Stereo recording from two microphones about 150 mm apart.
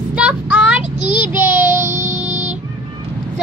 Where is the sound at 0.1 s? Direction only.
5° right (ahead or behind).